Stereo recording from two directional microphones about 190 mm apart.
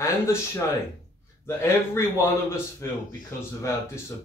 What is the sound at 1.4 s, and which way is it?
Speech, 15° left (ahead or behind).